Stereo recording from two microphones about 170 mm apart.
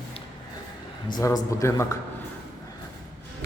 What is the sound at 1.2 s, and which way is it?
Speech, 20° left (ahead or behind).